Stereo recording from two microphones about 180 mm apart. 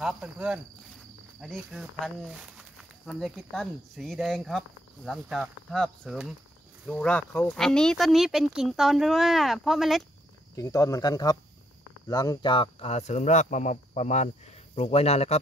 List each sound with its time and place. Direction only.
0.0 s speech: 5° right (ahead or behind)
10.5 s speech: 20° left (ahead or behind); by 15.3 s 35° left (ahead or behind)